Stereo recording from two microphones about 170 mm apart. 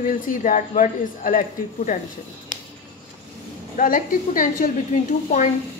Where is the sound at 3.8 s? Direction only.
55° left (ahead or behind).